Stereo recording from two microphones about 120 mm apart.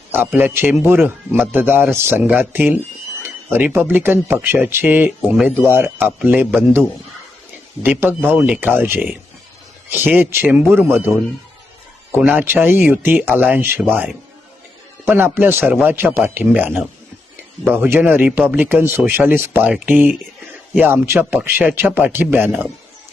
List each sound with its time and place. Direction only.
0.1 s a man's voice: 15° right (ahead or behind)
7.8 s a man's voice: 15° right (ahead or behind)
15.0 s a man's voice: 15° right (ahead or behind)